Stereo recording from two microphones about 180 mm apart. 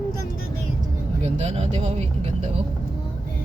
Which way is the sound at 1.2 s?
35° right (ahead or behind).